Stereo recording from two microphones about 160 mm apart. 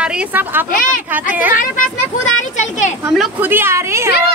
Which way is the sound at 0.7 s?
55° left (ahead or behind).